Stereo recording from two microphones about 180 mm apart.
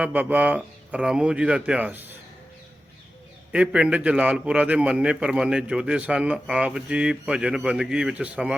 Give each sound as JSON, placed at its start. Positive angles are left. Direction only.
{"t": 0.0, "sound": "speech", "side_deg": -10}
{"t": 3.5, "sound": "a man's voice", "side_deg": -5}